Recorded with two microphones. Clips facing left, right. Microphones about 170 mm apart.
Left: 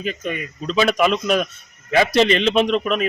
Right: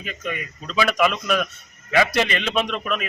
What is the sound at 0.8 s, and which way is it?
A man's voice, 25° left (ahead or behind).